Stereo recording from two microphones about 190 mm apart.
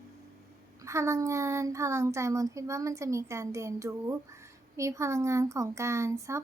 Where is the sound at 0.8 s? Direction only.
15° right (ahead or behind).